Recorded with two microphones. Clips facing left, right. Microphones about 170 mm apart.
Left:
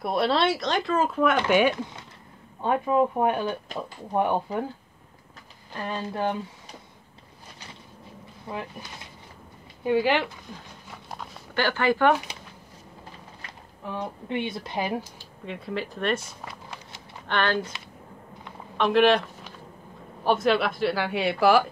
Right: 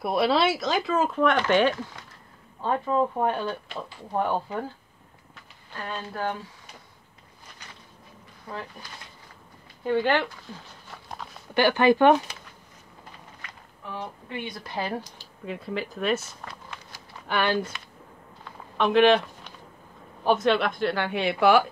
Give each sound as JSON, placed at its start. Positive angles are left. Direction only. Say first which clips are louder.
{"t": 0.0, "sound": "speech", "louder": "right 1 dB", "side_deg": 0}
{"t": 5.9, "sound": "speech", "louder": "left 3 dB", "side_deg": 15}
{"t": 8.5, "sound": "speech", "louder": "left 2 dB", "side_deg": 25}
{"t": 9.8, "sound": "speech", "louder": "left 1 dB", "side_deg": 10}
{"t": 10.9, "sound": "a sound", "louder": "even", "side_deg": 5}
{"t": 11.5, "sound": "speech", "louder": "right 4 dB", "side_deg": -15}
{"t": 13.4, "sound": "a sound", "louder": "even", "side_deg": 30}
{"t": 13.9, "sound": "speech", "louder": "left 5 dB", "side_deg": 25}
{"t": 15.4, "sound": "speech", "louder": "even", "side_deg": 0}
{"t": 16.7, "sound": "a sound", "louder": "left 1 dB", "side_deg": 20}
{"t": 17.3, "sound": "speech", "louder": "even", "side_deg": -10}
{"t": 18.8, "sound": "speech", "louder": "right 1 dB", "side_deg": 0}